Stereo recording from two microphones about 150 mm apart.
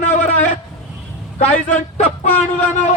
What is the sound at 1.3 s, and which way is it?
Speech, 55° left (ahead or behind).